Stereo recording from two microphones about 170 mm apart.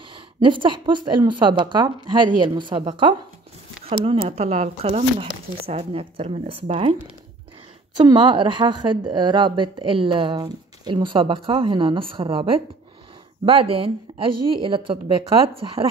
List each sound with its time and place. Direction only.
0.1 s a woman's voice: 30° right (ahead or behind)
4.0 s speech: 35° right (ahead or behind)
8.0 s a woman's voice: 25° right (ahead or behind)